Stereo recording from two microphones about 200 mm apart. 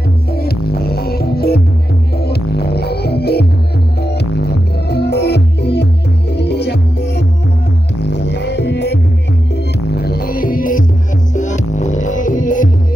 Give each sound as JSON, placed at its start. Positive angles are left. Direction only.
{"t": 0.4, "sound": "music", "side_deg": 50}
{"t": 8.3, "sound": "music", "side_deg": 55}